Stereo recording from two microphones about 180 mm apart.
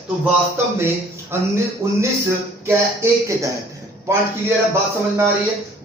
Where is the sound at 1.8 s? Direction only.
15° right (ahead or behind).